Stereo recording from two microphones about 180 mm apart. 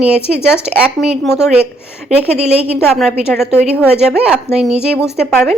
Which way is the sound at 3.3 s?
5° right (ahead or behind).